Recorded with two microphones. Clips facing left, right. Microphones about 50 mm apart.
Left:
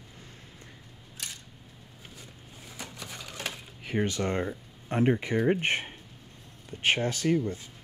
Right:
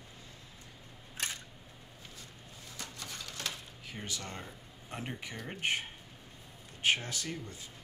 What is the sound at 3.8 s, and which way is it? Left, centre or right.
Speech, left.